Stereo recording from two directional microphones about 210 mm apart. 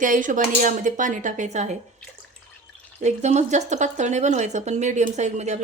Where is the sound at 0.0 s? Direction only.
40° right (ahead or behind).